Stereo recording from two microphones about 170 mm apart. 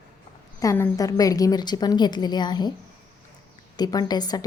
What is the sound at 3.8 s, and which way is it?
Speech, 25° left (ahead or behind).